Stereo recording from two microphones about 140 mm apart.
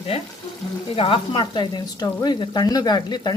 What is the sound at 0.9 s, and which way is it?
Speech, 40° left (ahead or behind).